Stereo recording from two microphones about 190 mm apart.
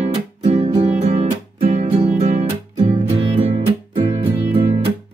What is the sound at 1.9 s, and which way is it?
Music, 30° right (ahead or behind).